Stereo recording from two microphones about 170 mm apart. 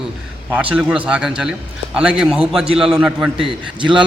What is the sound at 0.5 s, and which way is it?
A man's voice, 10° right (ahead or behind).